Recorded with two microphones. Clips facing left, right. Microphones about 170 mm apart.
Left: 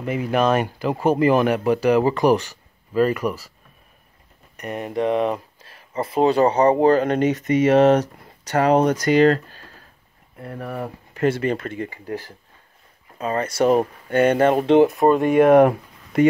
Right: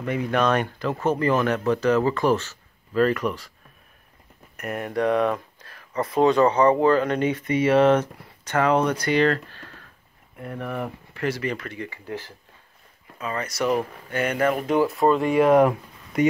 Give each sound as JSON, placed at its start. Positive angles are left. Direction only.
{"t": 0.0, "sound": "speech", "side_deg": 5}
{"t": 4.6, "sound": "speech", "side_deg": 0}
{"t": 5.0, "sound": "speech", "side_deg": 25}
{"t": 11.7, "sound": "speech", "side_deg": 45}
{"t": 13.2, "sound": "speech", "side_deg": 30}
{"t": 15.2, "sound": "speech", "side_deg": 50}